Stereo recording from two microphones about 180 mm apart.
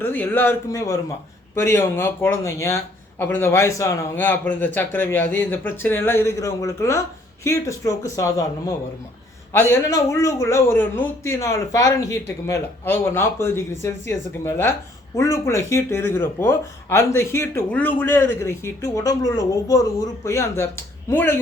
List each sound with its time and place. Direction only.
0.0 s speech: 10° left (ahead or behind)
9.5 s speech: 15° left (ahead or behind)